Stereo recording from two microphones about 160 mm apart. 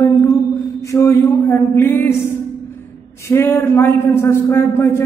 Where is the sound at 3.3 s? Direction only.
15° left (ahead or behind).